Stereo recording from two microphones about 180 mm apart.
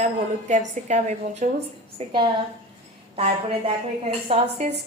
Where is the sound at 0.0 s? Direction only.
40° right (ahead or behind).